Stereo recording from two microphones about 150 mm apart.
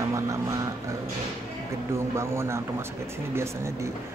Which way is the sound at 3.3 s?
20° right (ahead or behind).